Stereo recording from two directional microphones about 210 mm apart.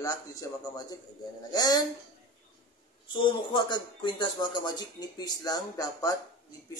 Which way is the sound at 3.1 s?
20° left (ahead or behind).